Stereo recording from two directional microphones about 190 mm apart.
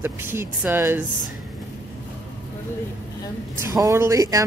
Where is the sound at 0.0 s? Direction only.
10° right (ahead or behind).